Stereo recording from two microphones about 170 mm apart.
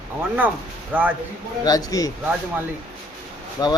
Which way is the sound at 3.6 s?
25° left (ahead or behind).